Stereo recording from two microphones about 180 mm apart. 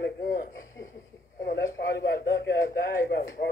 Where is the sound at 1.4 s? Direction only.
65° left (ahead or behind).